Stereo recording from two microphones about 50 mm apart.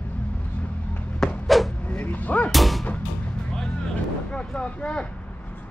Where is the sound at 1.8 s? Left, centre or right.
Left.